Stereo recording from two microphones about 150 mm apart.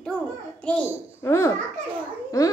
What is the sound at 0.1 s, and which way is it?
Babbling, 10° left (ahead or behind).